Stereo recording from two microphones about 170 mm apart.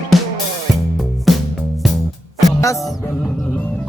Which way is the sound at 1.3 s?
Centre (ahead or behind).